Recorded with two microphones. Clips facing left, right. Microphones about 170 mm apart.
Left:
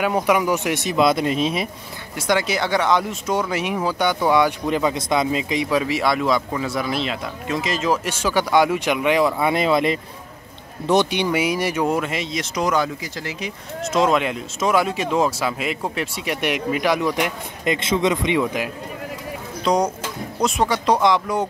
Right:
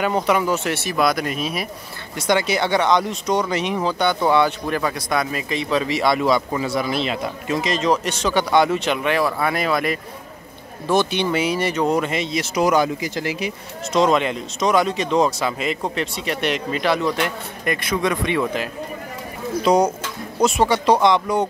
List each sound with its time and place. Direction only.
0.0 s speech: 10° left (ahead or behind); by 1.7 s 25° left (ahead or behind)
2.1 s speech: centre (ahead or behind)
13.9 s speech: 5° left (ahead or behind)
19.6 s speech: 5° right (ahead or behind)